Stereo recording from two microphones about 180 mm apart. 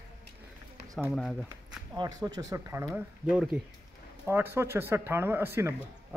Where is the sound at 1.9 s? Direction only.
20° right (ahead or behind).